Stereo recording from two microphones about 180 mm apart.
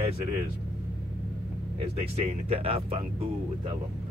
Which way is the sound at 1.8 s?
30° right (ahead or behind).